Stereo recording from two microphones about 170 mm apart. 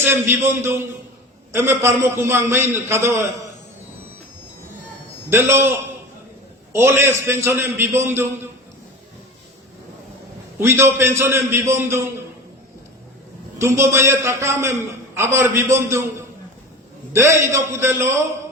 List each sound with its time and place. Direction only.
0.0 s a man's voice: 15° right (ahead or behind)
5.3 s a man's voice: 15° right (ahead or behind)
10.6 s a man's voice: 15° right (ahead or behind)
13.6 s a man's voice: 15° right (ahead or behind)
17.1 s a man's voice: 15° right (ahead or behind)